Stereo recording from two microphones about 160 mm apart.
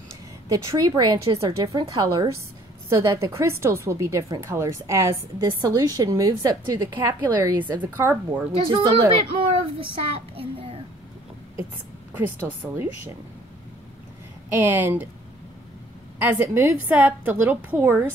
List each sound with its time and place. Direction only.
0.5 s a woman's voice: 20° right (ahead or behind)
8.7 s a woman's voice: 30° right (ahead or behind)
12.1 s a woman's voice: 10° right (ahead or behind)
14.5 s a woman's voice: 10° right (ahead or behind)
16.2 s a woman's voice: 10° right (ahead or behind)